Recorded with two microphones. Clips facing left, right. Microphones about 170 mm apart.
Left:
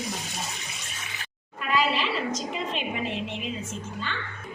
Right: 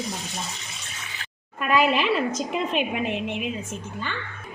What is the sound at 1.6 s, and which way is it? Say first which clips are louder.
A woman's voice: right 5 dB; 55° right (ahead or behind).